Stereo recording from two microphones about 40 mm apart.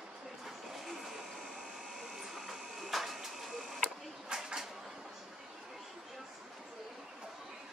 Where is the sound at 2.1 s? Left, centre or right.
Centre.